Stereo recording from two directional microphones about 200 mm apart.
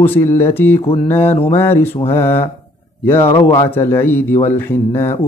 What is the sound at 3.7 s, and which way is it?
Speech, 10° left (ahead or behind).